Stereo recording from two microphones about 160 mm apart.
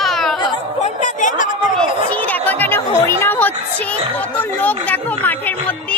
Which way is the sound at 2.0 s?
10° left (ahead or behind).